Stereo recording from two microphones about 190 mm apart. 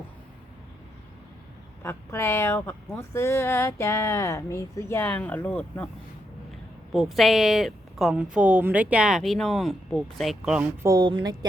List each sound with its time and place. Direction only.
1.8 s speech: 15° left (ahead or behind)
6.9 s a woman's voice: centre (ahead or behind)
10.8 s speech: 20° right (ahead or behind)